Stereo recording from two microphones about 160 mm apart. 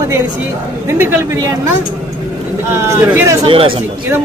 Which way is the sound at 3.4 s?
35° right (ahead or behind).